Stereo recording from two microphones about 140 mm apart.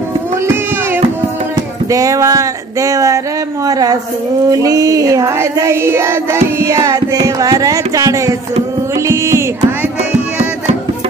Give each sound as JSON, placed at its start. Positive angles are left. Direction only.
{"t": 1.9, "sound": "child singing", "side_deg": -25}
{"t": 8.9, "sound": "carnatic music", "side_deg": -20}